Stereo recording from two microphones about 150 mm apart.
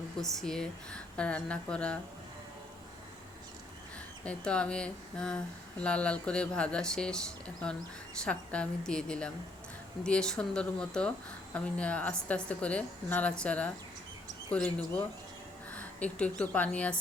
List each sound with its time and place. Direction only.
0.2 s a woman's voice: centre (ahead or behind)
4.2 s a woman's voice: 5° left (ahead or behind)
16.1 s a woman's voice: 5° left (ahead or behind)